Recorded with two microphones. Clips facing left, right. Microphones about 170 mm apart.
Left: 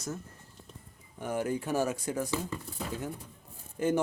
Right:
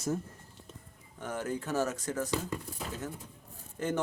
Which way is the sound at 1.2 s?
10° left (ahead or behind).